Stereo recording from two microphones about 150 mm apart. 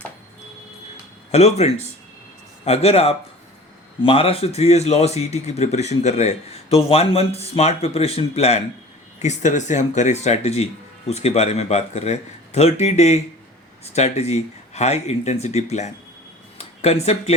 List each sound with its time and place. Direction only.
1.3 s speech: 45° left (ahead or behind)